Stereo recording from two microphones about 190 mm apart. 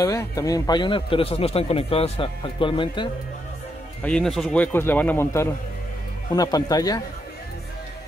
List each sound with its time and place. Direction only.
0.0 s a man's voice: 15° left (ahead or behind)
4.0 s a man's voice: 5° left (ahead or behind); by 7.0 s 20° left (ahead or behind)